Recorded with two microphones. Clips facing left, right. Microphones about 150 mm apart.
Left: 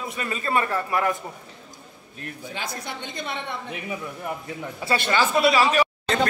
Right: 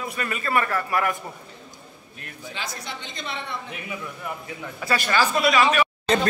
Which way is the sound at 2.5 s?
55° left (ahead or behind).